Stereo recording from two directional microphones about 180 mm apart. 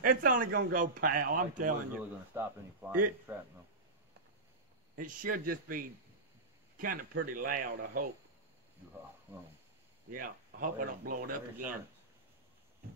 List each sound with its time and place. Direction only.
0.0 s a man's voice: 50° right (ahead or behind)
2.3 s a man's voice: 10° right (ahead or behind)
4.9 s a man's voice: 50° right (ahead or behind)
10.1 s a man's voice: 50° right (ahead or behind)